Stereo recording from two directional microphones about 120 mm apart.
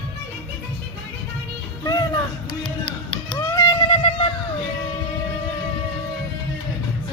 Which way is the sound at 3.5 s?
35° left (ahead or behind).